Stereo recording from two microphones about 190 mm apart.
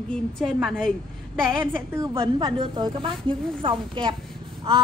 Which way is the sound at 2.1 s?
25° right (ahead or behind).